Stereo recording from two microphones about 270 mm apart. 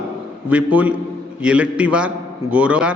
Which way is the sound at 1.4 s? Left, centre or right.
Centre.